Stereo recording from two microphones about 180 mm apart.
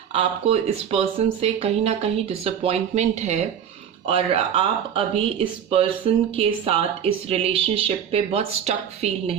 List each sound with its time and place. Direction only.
0.1 s speech: 30° right (ahead or behind)